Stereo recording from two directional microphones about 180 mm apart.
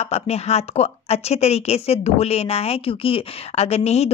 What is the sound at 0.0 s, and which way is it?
A woman's voice, 35° left (ahead or behind).